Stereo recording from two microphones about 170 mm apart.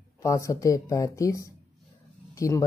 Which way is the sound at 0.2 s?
20° left (ahead or behind).